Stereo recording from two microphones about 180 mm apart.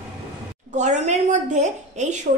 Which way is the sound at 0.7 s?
40° right (ahead or behind).